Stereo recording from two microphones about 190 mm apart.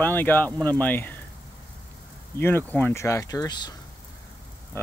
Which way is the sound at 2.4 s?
10° left (ahead or behind).